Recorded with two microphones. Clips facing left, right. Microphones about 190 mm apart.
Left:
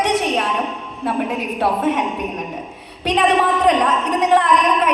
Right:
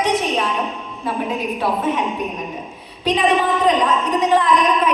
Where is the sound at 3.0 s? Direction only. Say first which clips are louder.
Left 1 dB; 70° left (ahead or behind).